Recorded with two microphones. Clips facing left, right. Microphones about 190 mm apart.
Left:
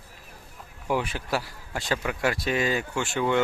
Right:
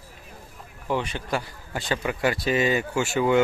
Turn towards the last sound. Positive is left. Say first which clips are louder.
# right 4 dB
turn(degrees=-5)  # may be behind; listen again after turning